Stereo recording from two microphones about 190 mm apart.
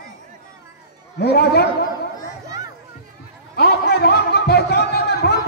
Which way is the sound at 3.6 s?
60° left (ahead or behind).